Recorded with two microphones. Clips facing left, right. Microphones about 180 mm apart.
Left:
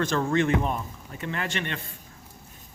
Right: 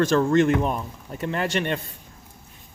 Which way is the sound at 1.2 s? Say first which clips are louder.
Right 6 dB; 45° right (ahead or behind).